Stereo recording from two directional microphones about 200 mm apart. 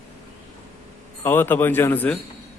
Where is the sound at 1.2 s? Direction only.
10° left (ahead or behind).